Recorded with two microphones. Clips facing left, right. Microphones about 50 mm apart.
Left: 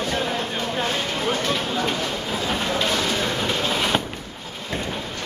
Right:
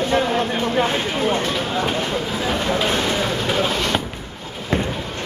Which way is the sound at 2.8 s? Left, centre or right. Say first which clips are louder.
Right 3 dB; right.